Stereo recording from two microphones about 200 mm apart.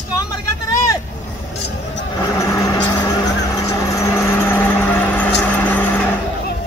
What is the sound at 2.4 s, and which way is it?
Vehicle, 15° left (ahead or behind).